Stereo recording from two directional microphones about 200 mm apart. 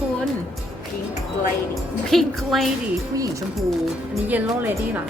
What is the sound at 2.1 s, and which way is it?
Speech, centre (ahead or behind).